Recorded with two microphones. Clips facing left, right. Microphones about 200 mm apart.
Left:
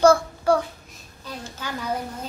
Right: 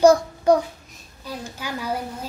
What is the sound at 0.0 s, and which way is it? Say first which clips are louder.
Child singing: right 2 dB; 15° right (ahead or behind).